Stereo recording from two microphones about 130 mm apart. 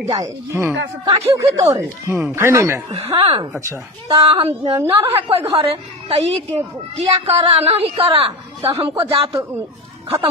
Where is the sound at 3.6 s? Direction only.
25° right (ahead or behind).